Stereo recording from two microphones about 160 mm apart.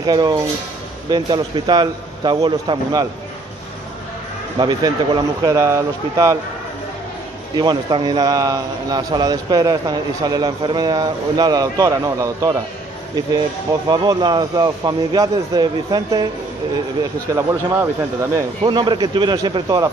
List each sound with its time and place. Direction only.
0.0 s a man's voice: 25° right (ahead or behind)
4.6 s a man's voice: 25° right (ahead or behind)
7.5 s a man's voice: 25° right (ahead or behind)
13.8 s a man's voice: 25° right (ahead or behind)
17.4 s speech: 15° right (ahead or behind)
18.7 s a man's voice: 30° right (ahead or behind)